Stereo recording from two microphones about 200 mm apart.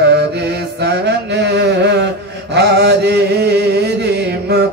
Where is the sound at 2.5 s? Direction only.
60° right (ahead or behind).